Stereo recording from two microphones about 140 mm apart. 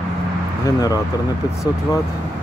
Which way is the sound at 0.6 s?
25° left (ahead or behind).